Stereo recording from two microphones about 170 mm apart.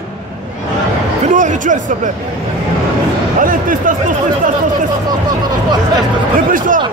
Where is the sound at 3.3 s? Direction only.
50° right (ahead or behind).